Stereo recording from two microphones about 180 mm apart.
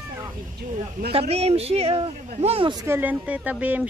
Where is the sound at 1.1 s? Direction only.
35° right (ahead or behind).